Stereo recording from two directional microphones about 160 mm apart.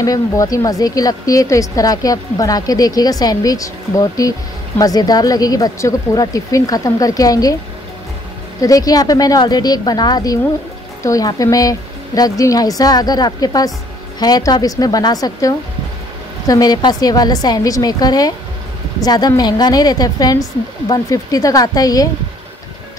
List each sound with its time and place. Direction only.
0.0 s a woman's voice: 20° left (ahead or behind)
8.5 s a woman's voice: 20° left (ahead or behind)